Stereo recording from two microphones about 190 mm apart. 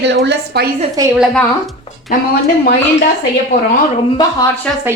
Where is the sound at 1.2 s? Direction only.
Centre (ahead or behind).